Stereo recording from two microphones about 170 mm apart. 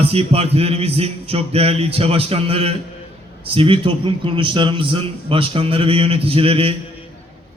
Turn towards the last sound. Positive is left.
turn(degrees=-35)  # may be behind; listen again after turning